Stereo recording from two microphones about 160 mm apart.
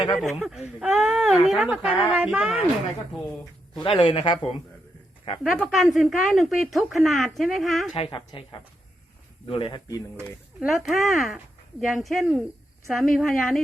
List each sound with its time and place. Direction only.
0.2 s a woman's voice: centre (ahead or behind)
3.8 s a man's voice: 35° left (ahead or behind)
5.4 s a woman's voice: centre (ahead or behind)
7.9 s a man's voice: 35° left (ahead or behind)
9.5 s a man's voice: 30° left (ahead or behind)
10.6 s a woman's voice: centre (ahead or behind)